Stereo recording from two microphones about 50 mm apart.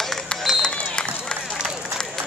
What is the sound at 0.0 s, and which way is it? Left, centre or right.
Run, centre.